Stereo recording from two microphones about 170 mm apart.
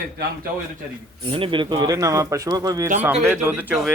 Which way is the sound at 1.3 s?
30° right (ahead or behind).